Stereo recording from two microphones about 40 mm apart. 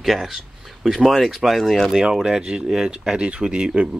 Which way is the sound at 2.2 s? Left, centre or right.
Right.